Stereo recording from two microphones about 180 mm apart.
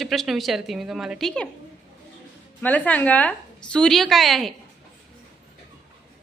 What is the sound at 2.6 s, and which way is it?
A woman's voice, 10° left (ahead or behind).